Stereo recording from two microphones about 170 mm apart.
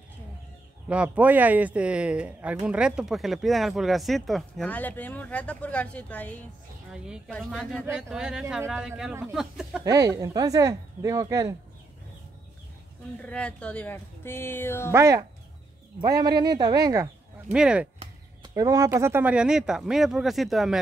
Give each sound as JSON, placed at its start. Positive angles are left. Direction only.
{"t": 0.8, "sound": "speech", "side_deg": -5}
{"t": 7.8, "sound": "speech", "side_deg": -5}
{"t": 9.8, "sound": "speech", "side_deg": -20}
{"t": 13.2, "sound": "speech", "side_deg": 5}
{"t": 14.9, "sound": "speech", "side_deg": -15}
{"t": 17.5, "sound": "speech", "side_deg": -5}
{"t": 18.5, "sound": "speech", "side_deg": -20}